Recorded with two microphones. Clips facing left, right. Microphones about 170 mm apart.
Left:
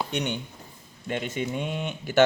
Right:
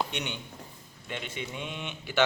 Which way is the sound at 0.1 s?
40° left (ahead or behind).